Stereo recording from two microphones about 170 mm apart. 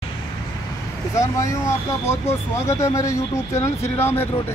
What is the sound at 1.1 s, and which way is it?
Speech, 20° left (ahead or behind).